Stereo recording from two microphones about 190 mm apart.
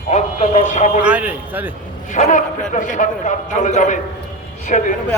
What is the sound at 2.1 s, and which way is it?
A man's voice, 40° left (ahead or behind).